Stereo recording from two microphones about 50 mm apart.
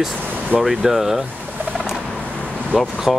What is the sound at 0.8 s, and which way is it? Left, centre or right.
Speech, centre.